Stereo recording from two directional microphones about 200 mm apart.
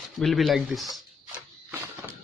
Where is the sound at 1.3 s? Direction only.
10° right (ahead or behind).